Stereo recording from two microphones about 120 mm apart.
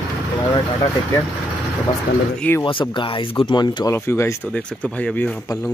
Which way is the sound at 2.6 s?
45° left (ahead or behind).